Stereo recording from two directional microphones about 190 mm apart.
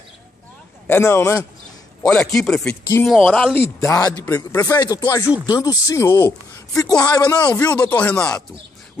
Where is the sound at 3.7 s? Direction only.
15° left (ahead or behind).